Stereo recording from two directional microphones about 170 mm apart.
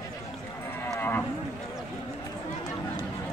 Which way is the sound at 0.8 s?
15° left (ahead or behind).